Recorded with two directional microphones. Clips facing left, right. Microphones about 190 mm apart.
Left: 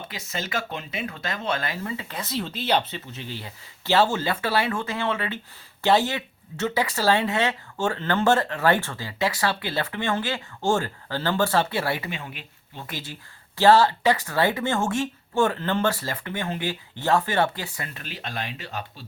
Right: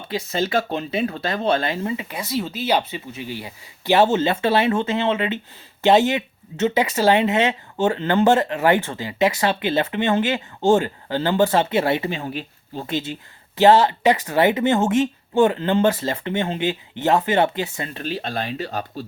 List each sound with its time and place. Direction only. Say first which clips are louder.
0.1 s speech: right 11 dB; 30° right (ahead or behind)
12.9 s speech: right 11 dB; 25° right (ahead or behind); by 19.0 s 40° right (ahead or behind)